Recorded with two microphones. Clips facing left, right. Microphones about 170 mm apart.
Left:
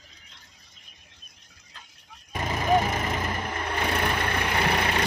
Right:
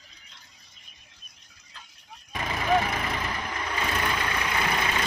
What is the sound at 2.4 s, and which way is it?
Vehicle, 20° left (ahead or behind).